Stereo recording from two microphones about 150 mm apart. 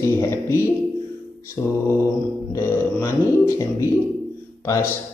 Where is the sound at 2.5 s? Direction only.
20° left (ahead or behind).